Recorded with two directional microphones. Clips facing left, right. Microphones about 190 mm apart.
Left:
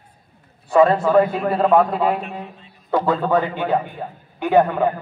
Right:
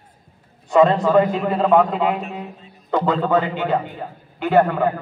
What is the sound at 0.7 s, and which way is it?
A man's voice, 5° left (ahead or behind).